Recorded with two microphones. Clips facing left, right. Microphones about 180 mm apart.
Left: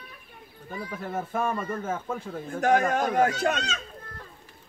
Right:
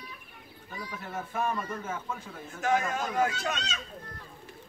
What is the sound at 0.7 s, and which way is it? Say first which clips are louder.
Speech: left 6 dB; 50° left (ahead or behind).